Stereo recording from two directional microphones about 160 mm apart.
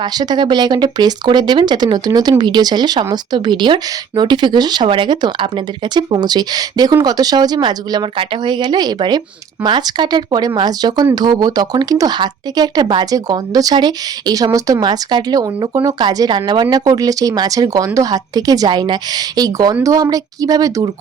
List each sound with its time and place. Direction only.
0.0 s speech: 25° right (ahead or behind)